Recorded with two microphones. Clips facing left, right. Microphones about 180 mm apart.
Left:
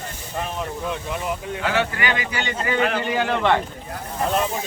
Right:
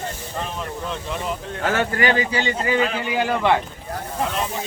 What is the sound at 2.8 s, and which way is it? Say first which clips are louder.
Speech: left 1 dB; 60° left (ahead or behind).